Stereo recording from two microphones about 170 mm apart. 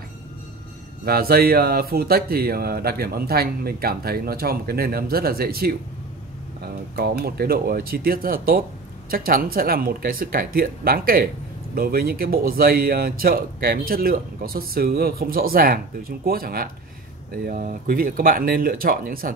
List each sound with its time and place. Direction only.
1.0 s speech: 65° right (ahead or behind)